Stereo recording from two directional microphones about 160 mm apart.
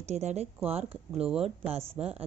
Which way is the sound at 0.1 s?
45° right (ahead or behind).